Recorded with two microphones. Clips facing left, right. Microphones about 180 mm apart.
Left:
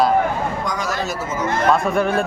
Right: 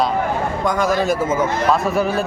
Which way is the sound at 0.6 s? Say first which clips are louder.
Right 6 dB; 55° right (ahead or behind).